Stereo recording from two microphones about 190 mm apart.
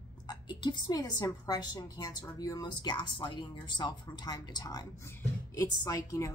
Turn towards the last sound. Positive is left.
turn(degrees=15)  # may be behind; listen again after turning